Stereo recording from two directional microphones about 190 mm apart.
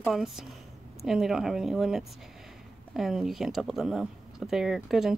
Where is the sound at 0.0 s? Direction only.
Centre (ahead or behind).